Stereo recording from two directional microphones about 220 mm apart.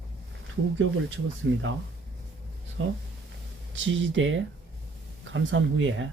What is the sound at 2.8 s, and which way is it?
Speech, 65° right (ahead or behind).